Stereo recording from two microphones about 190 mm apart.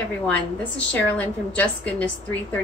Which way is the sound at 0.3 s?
5° left (ahead or behind).